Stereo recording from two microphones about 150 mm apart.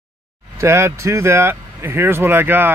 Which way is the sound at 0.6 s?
20° right (ahead or behind).